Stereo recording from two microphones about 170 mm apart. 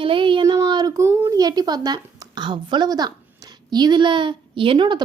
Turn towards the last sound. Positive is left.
turn(degrees=-30)  # may be behind; listen again after turning